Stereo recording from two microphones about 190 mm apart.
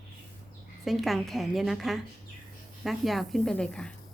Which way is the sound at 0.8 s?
Centre (ahead or behind).